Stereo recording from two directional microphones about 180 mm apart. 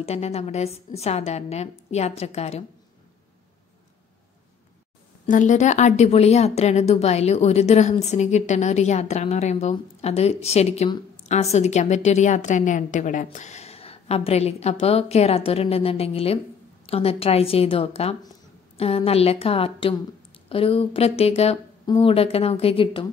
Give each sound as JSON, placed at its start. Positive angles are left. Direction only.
{"t": 0.0, "sound": "speech", "side_deg": 35}
{"t": 5.3, "sound": "speech", "side_deg": 45}